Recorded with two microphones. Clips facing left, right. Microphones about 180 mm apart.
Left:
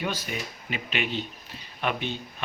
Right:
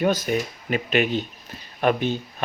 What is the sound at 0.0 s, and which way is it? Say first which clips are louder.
Speech: right 10 dB; 45° right (ahead or behind).